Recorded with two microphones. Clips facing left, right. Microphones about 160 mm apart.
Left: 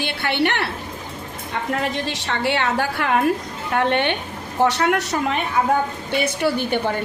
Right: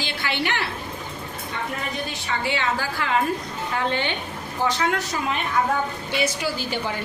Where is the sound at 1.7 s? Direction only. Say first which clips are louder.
Left 6 dB; 90° left; by 6.9 s 60° left (ahead or behind).